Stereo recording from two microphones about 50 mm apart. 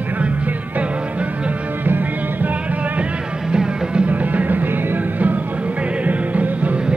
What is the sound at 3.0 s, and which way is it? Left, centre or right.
Music, centre.